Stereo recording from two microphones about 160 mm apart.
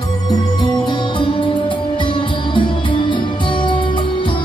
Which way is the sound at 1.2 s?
30° left (ahead or behind).